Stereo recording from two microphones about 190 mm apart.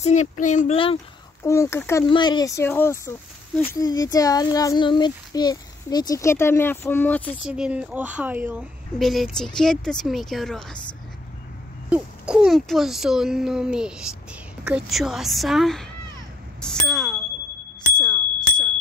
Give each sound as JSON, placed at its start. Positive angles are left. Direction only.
{"t": 0.0, "sound": "speech", "side_deg": 40}
{"t": 1.4, "sound": "speech", "side_deg": 15}
{"t": 7.4, "sound": "speech", "side_deg": -5}
{"t": 11.9, "sound": "speech", "side_deg": -5}
{"t": 17.9, "sound": "bicycle bell", "side_deg": 5}